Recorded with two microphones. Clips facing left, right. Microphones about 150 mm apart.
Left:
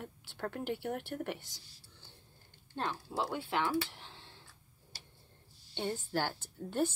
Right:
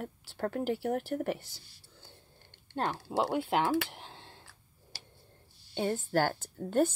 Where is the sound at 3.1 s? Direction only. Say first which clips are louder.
Right 6 dB; 75° right (ahead or behind).